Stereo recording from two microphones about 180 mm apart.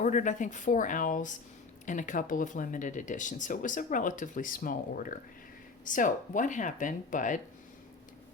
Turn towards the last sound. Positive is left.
turn(degrees=45)  # may be behind; listen again after turning